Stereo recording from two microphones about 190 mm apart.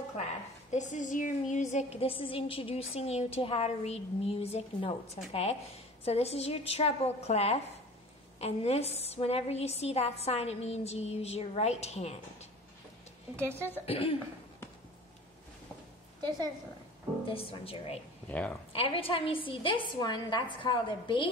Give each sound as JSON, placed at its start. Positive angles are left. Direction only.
{"t": 0.7, "sound": "a woman's voice", "side_deg": 40}
{"t": 13.8, "sound": "a woman's voice", "side_deg": 30}
{"t": 16.2, "sound": "a woman's voice", "side_deg": -20}
{"t": 17.2, "sound": "a woman's voice", "side_deg": 30}
{"t": 18.3, "sound": "speech", "side_deg": 5}
{"t": 18.7, "sound": "a woman's voice", "side_deg": 30}